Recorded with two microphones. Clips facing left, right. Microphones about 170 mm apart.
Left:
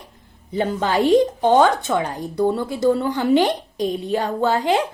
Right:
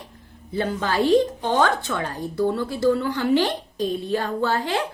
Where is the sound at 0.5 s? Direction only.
15° left (ahead or behind).